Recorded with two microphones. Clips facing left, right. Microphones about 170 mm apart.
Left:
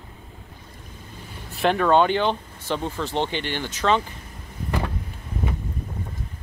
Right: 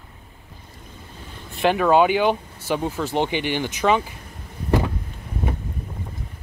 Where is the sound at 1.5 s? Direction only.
Centre (ahead or behind).